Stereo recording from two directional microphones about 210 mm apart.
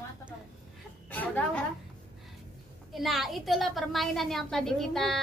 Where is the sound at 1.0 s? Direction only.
5° left (ahead or behind).